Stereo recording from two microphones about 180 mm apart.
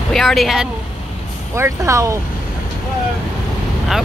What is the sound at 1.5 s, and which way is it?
Speech, 15° right (ahead or behind).